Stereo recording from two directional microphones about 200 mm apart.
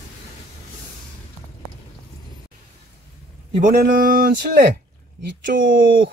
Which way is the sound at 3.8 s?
45° right (ahead or behind).